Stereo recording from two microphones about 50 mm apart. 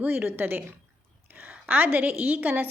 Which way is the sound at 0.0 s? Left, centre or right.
Right.